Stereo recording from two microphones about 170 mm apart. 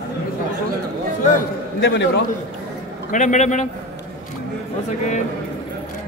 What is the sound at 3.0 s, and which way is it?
Speech, 45° left (ahead or behind).